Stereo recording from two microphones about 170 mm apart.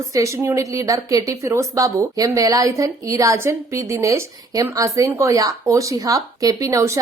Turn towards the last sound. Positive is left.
turn(degrees=-20)  # may be behind; listen again after turning